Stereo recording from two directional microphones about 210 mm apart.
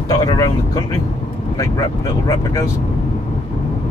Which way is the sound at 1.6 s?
15° left (ahead or behind).